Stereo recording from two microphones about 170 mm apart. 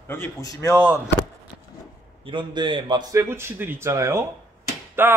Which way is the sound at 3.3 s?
15° right (ahead or behind).